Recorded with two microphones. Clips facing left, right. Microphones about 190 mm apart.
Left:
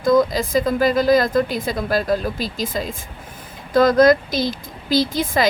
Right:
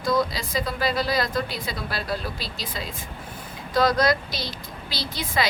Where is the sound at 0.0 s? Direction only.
50° left (ahead or behind).